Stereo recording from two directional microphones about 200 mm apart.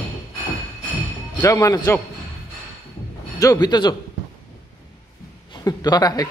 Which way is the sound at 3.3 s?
20° left (ahead or behind).